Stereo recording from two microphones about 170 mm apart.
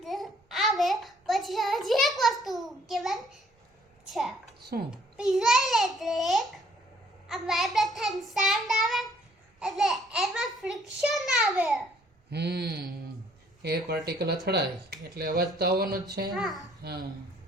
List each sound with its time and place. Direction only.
0.0 s child singing: centre (ahead or behind)
4.1 s a sound: centre (ahead or behind)
4.9 s babbling: 5° right (ahead or behind)
7.3 s child singing: centre (ahead or behind)
9.6 s babbling: 5° right (ahead or behind)
11.0 s a sound: centre (ahead or behind)
12.3 s speech: 75° right (ahead or behind); by 12.9 s 60° right (ahead or behind)
13.6 s speech: 70° right (ahead or behind)
16.3 s a child's voice: centre (ahead or behind)
16.8 s speech: 70° right (ahead or behind)